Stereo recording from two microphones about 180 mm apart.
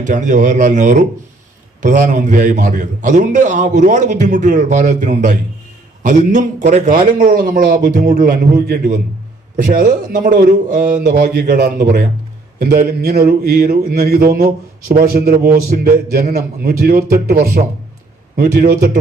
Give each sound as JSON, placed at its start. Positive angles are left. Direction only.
{"t": 0.0, "sound": "a man's voice", "side_deg": -45}